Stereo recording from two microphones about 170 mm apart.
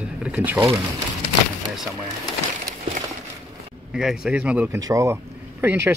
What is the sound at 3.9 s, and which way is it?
Speech, 5° right (ahead or behind).